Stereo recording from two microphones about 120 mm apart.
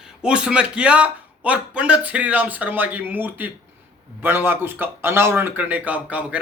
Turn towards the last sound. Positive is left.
turn(degrees=-10)  # may be behind; listen again after turning